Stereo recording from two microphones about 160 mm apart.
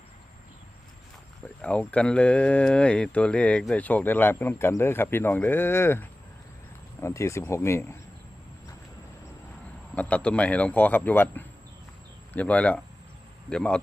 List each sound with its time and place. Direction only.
1.9 s speech: 5° left (ahead or behind)
9.9 s a man's voice: 10° left (ahead or behind)